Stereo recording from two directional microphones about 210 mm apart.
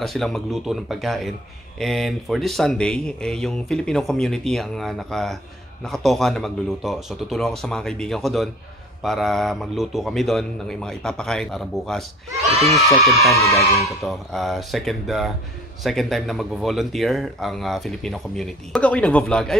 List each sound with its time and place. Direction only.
0.0 s speech: centre (ahead or behind)
12.4 s speech: 30° right (ahead or behind)
12.7 s speech: centre (ahead or behind)
13.3 s speech: 15° left (ahead or behind)
13.7 s speech: centre (ahead or behind)